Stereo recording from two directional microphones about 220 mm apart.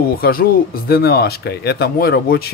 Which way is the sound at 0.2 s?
45° left (ahead or behind).